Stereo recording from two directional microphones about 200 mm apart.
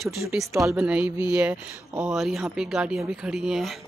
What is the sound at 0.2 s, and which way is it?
Speech, 10° right (ahead or behind).